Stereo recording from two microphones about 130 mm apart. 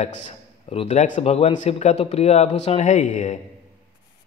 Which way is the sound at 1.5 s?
65° left (ahead or behind).